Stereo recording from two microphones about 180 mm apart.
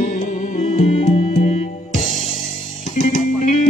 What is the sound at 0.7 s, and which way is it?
Music, 45° left (ahead or behind).